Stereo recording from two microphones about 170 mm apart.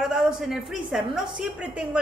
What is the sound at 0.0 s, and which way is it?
A woman's voice, 5° right (ahead or behind).